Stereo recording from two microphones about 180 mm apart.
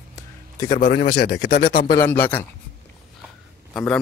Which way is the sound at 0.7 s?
50° left (ahead or behind).